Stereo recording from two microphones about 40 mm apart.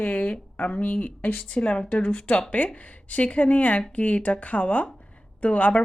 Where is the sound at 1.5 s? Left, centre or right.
Left.